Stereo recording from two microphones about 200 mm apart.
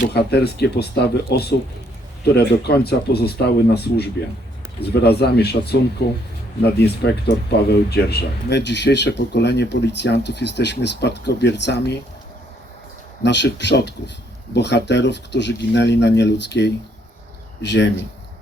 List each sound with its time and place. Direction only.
0.1 s speech: 55° left (ahead or behind)
13.2 s speech: 60° left (ahead or behind)